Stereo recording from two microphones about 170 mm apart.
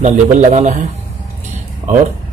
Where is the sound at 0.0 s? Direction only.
45° right (ahead or behind).